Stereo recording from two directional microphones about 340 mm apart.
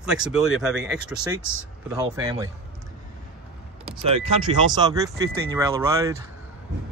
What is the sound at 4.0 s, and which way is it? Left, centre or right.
Speech, centre.